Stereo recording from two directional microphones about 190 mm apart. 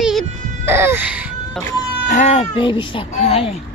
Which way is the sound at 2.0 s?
35° left (ahead or behind).